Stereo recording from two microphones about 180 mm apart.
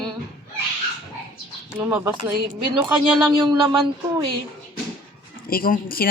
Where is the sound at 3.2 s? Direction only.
25° right (ahead or behind).